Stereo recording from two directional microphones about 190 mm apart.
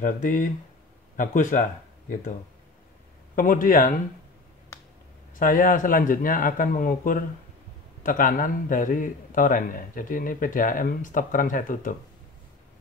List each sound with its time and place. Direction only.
0.0 s a man's voice: 40° left (ahead or behind)
3.3 s a man's voice: 45° left (ahead or behind)
5.4 s a man's voice: 45° left (ahead or behind)